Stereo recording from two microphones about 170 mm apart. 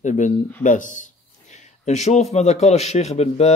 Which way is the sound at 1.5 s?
40° left (ahead or behind).